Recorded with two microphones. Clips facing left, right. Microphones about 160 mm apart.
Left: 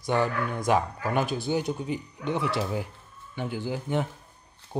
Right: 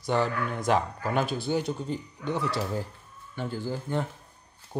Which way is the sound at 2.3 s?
25° left (ahead or behind).